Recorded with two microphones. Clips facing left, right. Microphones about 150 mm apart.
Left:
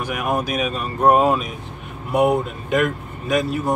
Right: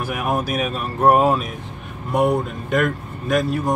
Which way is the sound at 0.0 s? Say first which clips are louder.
Even; 5° right (ahead or behind).